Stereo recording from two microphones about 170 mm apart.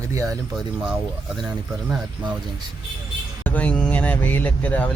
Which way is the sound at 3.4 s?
10° left (ahead or behind).